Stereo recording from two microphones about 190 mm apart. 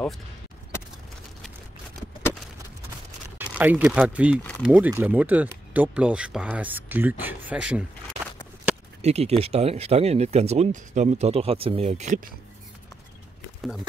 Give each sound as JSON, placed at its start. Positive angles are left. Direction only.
{"t": 3.3, "sound": "speech", "side_deg": -10}
{"t": 4.4, "sound": "a sound", "side_deg": 10}
{"t": 4.6, "sound": "speech", "side_deg": -10}
{"t": 9.0, "sound": "speech", "side_deg": -35}